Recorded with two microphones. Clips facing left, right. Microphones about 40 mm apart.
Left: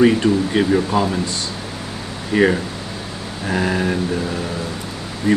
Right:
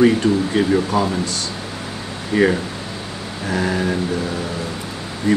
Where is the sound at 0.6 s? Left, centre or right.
Left.